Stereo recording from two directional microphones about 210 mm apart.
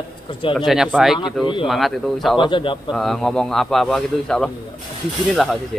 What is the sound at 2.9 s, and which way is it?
A man's voice, centre (ahead or behind).